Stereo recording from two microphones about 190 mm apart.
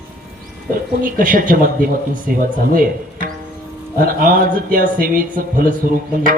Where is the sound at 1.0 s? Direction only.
45° right (ahead or behind).